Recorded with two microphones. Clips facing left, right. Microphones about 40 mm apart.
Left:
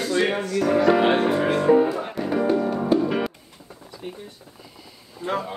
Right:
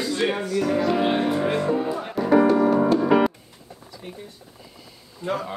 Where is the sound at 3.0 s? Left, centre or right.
Right.